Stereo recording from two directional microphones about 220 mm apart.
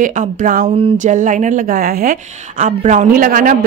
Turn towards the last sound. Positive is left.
turn(degrees=-40)  # may be behind; listen again after turning